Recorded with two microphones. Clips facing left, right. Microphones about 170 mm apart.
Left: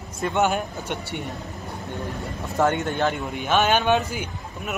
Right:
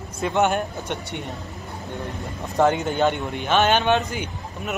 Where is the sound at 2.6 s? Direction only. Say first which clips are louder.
Right 3 dB; centre (ahead or behind).